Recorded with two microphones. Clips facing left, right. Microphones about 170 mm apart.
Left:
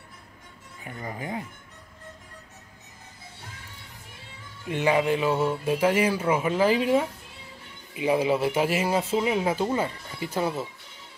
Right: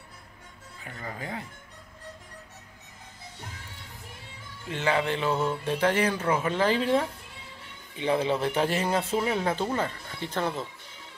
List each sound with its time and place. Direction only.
0.8 s speech: 20° left (ahead or behind)
4.6 s speech: 15° left (ahead or behind)